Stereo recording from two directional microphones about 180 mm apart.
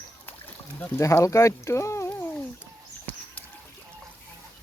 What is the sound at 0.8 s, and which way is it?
Speech, 15° left (ahead or behind).